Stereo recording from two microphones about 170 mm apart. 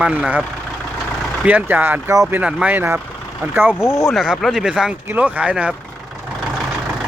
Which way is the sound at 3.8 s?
15° left (ahead or behind).